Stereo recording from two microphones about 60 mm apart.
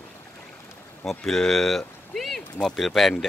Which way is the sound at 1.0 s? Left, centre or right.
Centre.